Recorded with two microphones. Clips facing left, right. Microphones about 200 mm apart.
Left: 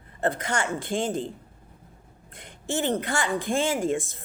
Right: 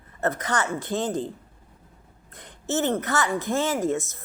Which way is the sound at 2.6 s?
15° left (ahead or behind).